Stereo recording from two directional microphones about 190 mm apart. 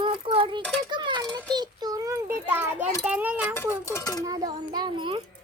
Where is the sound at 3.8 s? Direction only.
15° left (ahead or behind).